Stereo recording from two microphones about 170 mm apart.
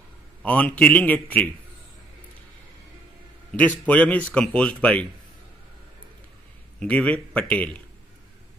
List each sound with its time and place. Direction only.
0.4 s a man's voice: 5° left (ahead or behind)
3.5 s a man's voice: 10° left (ahead or behind)
6.8 s a man's voice: 5° left (ahead or behind)